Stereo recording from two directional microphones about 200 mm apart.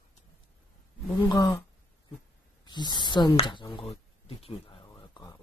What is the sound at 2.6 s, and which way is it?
Speech, 20° left (ahead or behind).